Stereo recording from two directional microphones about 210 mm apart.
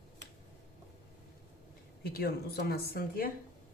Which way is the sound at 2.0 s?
45° left (ahead or behind).